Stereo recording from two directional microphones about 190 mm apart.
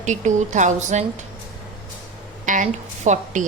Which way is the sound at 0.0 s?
40° right (ahead or behind).